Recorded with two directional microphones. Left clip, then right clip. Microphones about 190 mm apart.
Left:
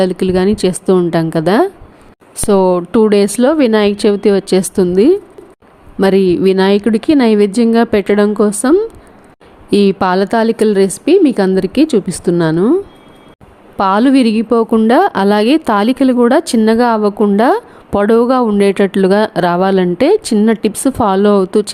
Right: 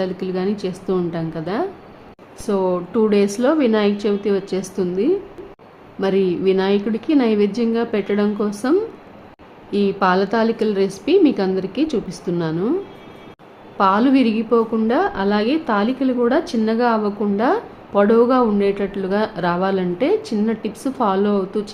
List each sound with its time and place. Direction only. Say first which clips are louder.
0.0 s a woman's voice: left 10 dB; 45° left (ahead or behind)
13.7 s a woman's voice: left 5 dB; 50° left (ahead or behind)